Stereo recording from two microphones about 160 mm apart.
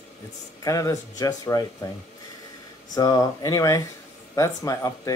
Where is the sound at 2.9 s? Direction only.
25° left (ahead or behind).